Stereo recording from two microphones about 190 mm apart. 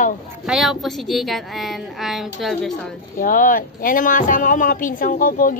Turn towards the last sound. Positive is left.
turn(degrees=45)  # may be behind; listen again after turning